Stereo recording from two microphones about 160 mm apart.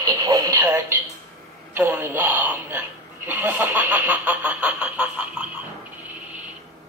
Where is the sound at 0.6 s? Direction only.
10° right (ahead or behind).